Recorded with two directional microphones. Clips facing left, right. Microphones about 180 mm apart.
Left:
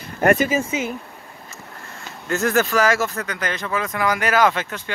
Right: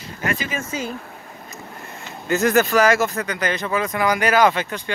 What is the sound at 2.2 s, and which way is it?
Speech, centre (ahead or behind).